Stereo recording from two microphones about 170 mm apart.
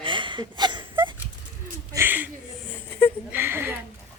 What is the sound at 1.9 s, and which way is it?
Speech, 10° right (ahead or behind).